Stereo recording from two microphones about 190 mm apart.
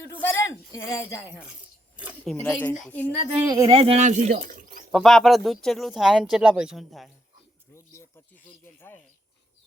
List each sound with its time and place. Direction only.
0.0 s a man's voice: 10° left (ahead or behind)
2.0 s keys jangling: 5° right (ahead or behind)
2.3 s speech: 10° left (ahead or behind)
3.4 s speech: 20° right (ahead or behind); by 4.9 s 45° right (ahead or behind)
4.9 s speech: centre (ahead or behind)
7.7 s a sound: 15° left (ahead or behind)